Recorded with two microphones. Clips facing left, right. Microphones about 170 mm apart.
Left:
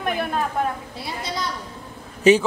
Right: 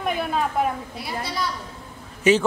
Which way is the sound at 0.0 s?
Centre (ahead or behind).